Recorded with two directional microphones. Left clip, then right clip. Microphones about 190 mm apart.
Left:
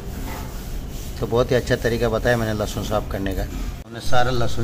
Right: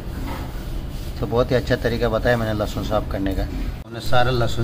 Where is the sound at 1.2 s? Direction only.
10° left (ahead or behind).